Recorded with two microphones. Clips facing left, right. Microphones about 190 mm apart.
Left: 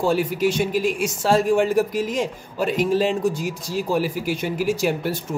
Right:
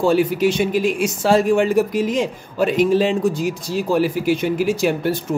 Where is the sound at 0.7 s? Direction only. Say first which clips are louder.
Right 3 dB; centre (ahead or behind).